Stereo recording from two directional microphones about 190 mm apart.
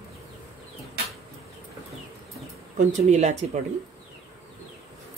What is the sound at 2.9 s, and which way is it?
Speech, 35° right (ahead or behind).